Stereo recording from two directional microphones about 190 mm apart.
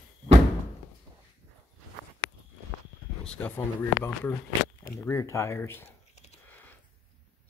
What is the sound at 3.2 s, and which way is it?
Speech, 5° left (ahead or behind).